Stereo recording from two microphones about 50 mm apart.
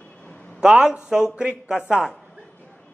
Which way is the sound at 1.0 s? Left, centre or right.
Centre.